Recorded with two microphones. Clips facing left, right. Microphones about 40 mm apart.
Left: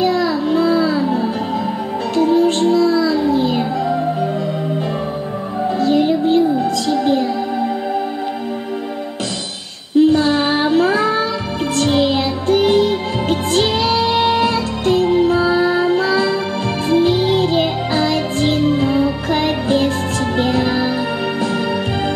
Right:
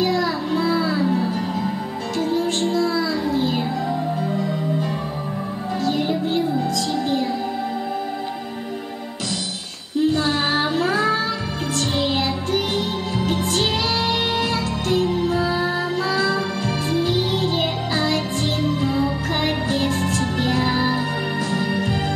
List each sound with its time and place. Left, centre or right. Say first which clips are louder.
0.0 s music: left 5 dB; left
5.8 s music: left 7 dB; left
9.9 s child singing: left 7 dB; left
11.7 s music: left 7 dB; left